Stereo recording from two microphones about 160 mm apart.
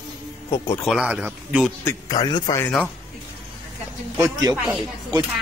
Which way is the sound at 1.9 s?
20° left (ahead or behind).